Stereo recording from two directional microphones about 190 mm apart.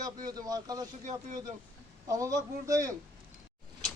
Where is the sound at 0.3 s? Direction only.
20° right (ahead or behind).